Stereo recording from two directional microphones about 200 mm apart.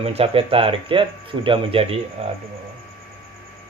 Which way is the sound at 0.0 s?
30° right (ahead or behind).